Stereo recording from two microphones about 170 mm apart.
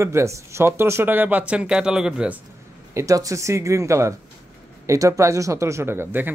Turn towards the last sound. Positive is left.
turn(degrees=-10)  # may be behind; listen again after turning